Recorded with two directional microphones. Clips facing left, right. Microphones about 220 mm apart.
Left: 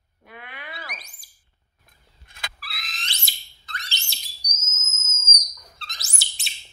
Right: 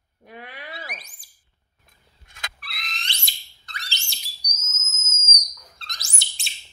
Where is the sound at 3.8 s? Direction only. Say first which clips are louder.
Even; centre (ahead or behind).